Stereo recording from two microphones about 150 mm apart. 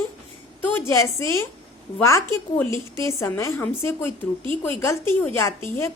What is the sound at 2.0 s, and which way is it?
A woman's voice, 20° left (ahead or behind).